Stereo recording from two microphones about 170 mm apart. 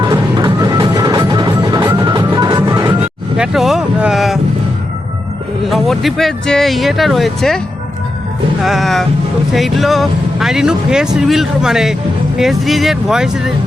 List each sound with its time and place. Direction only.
0.0 s music: 25° right (ahead or behind)
3.3 s speech: 5° right (ahead or behind)
5.7 s speech: centre (ahead or behind)
8.6 s speech: centre (ahead or behind)